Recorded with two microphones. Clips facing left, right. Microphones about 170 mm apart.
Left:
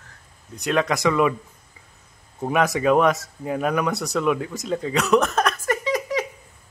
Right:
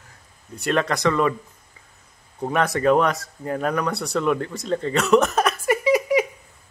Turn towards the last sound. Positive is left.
turn(degrees=-10)  # may be behind; listen again after turning